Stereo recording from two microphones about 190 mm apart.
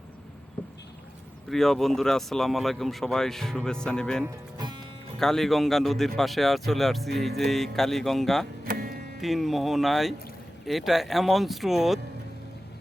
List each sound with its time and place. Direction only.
1.5 s speech: centre (ahead or behind)
4.2 s speech: 20° right (ahead or behind)
5.2 s speech: centre (ahead or behind)
8.6 s music: 50° right (ahead or behind)
9.2 s speech: centre (ahead or behind)